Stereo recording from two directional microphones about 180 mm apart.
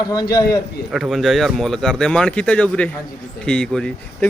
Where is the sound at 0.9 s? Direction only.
Centre (ahead or behind).